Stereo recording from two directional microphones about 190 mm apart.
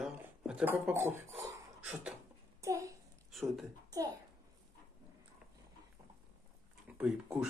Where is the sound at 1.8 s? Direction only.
5° right (ahead or behind).